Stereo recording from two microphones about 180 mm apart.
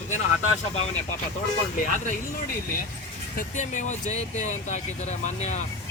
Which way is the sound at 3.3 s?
45° left (ahead or behind).